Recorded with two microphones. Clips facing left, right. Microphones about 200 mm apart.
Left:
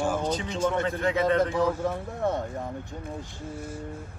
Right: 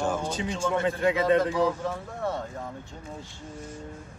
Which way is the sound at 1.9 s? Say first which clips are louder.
Left 3 dB; 20° left (ahead or behind).